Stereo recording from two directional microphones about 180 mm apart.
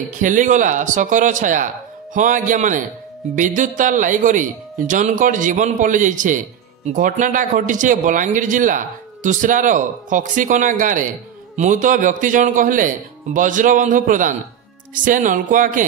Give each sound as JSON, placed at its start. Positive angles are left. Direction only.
{"t": 0.2, "sound": "speech", "side_deg": -45}